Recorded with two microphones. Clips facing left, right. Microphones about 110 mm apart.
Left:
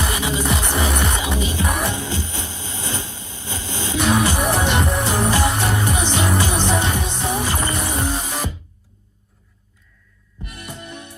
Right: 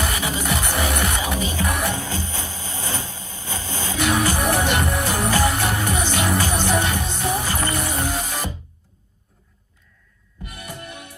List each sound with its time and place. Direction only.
0.0 s music: 15° left (ahead or behind)
1.9 s music: 45° right (ahead or behind)
3.1 s music: 20° left (ahead or behind)